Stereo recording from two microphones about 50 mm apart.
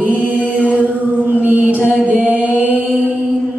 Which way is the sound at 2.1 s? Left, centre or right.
Right.